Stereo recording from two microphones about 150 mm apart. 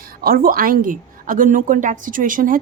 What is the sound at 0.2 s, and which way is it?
A woman's voice, 75° right (ahead or behind).